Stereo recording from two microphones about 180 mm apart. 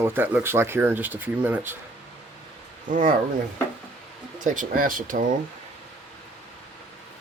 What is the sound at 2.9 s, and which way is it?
Speech, 45° right (ahead or behind).